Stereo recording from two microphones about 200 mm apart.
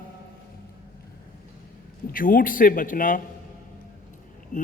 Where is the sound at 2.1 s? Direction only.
45° left (ahead or behind).